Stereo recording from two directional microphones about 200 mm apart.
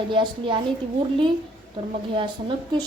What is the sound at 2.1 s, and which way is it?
Speech, 25° right (ahead or behind).